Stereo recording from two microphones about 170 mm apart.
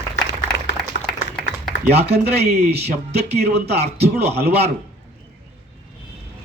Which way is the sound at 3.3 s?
70° right (ahead or behind).